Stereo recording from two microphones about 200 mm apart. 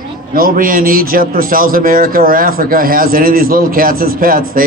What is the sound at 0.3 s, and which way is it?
A man's voice, 45° right (ahead or behind).